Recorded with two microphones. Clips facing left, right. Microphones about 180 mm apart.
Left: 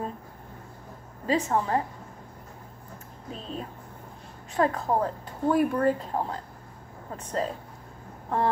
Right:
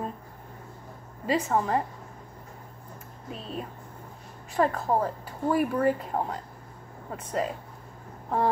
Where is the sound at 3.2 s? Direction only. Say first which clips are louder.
Even; 5° right (ahead or behind).